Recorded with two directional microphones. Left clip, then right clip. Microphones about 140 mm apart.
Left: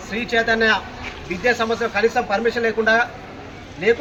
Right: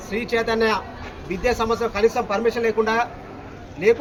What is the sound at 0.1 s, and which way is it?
A man's voice, 35° right (ahead or behind).